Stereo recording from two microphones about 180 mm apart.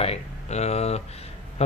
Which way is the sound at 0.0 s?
35° left (ahead or behind).